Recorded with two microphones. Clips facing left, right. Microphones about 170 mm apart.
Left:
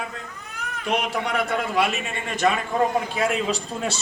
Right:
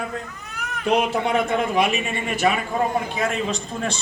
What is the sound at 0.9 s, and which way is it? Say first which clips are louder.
A man's voice: right 5 dB; 30° right (ahead or behind).